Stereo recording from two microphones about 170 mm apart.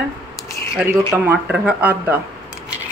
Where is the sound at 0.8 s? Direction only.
5° right (ahead or behind).